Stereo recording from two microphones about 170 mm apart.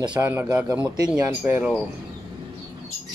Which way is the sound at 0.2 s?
10° right (ahead or behind).